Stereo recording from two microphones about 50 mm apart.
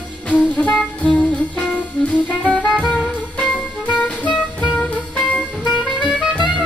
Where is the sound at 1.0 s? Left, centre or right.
Left.